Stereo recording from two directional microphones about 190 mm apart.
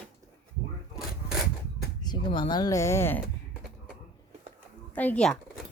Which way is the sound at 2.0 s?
25° left (ahead or behind).